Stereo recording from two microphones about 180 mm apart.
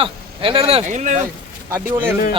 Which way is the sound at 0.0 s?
30° right (ahead or behind).